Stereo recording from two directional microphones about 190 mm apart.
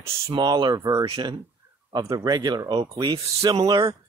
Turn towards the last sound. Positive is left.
turn(degrees=-20)  # may be behind; listen again after turning